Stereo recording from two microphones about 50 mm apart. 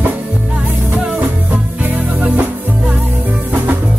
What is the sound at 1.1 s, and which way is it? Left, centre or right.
Music, right.